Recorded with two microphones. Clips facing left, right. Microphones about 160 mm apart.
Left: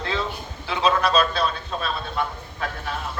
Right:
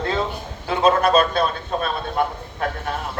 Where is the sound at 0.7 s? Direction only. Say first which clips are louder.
Right 4 dB; 50° right (ahead or behind).